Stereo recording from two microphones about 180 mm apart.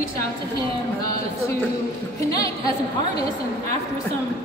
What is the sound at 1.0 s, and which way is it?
A woman's voice, 20° left (ahead or behind).